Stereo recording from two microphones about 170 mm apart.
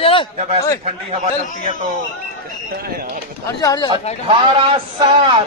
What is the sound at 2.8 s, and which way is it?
Speech, 60° right (ahead or behind).